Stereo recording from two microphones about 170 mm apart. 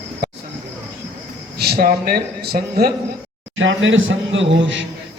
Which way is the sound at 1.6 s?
65° right (ahead or behind).